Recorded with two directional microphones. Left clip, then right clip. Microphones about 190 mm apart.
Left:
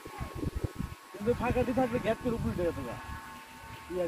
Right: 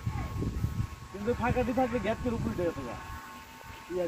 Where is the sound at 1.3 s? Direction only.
35° left (ahead or behind).